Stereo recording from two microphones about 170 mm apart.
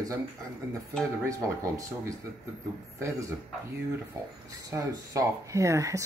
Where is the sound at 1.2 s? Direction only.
20° right (ahead or behind).